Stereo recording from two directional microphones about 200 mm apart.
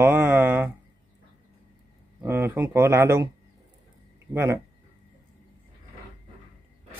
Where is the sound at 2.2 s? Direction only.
10° right (ahead or behind).